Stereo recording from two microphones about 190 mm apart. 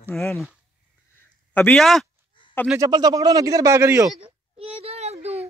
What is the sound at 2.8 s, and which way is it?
Speech, 20° right (ahead or behind).